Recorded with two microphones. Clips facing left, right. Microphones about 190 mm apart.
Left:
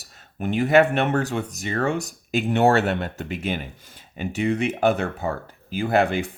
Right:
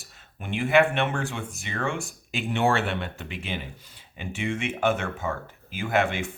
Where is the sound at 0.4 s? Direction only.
40° left (ahead or behind).